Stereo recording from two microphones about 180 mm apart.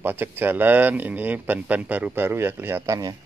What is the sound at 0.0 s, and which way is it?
Speech, 10° right (ahead or behind).